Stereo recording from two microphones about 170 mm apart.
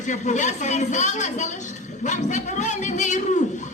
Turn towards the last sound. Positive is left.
turn(degrees=45)  # may be behind; listen again after turning